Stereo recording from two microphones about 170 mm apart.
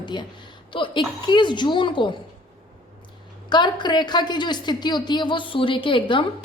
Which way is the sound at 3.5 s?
25° left (ahead or behind).